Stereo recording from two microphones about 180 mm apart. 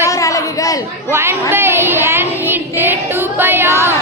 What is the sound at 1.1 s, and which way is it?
Child singing, 15° right (ahead or behind).